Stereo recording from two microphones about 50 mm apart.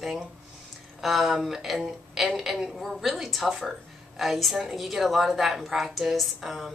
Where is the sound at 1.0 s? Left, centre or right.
Centre.